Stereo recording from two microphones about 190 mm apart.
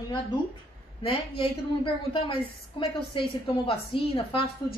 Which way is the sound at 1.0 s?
30° left (ahead or behind).